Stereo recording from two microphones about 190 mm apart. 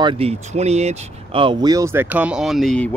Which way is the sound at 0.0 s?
30° right (ahead or behind).